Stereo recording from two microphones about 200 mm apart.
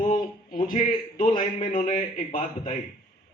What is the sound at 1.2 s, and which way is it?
A man's voice, 25° left (ahead or behind).